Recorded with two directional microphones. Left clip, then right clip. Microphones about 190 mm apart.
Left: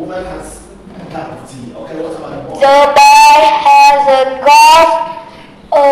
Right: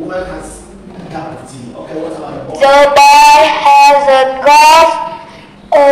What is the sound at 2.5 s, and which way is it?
Speech, 15° right (ahead or behind).